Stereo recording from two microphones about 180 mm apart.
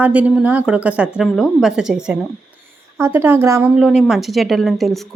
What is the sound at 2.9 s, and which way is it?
A woman's voice, 15° right (ahead or behind).